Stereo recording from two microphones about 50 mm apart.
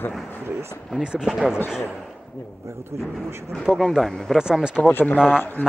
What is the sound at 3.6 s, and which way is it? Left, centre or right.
Speech, centre.